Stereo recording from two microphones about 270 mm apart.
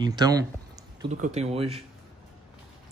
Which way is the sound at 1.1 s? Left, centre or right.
Right.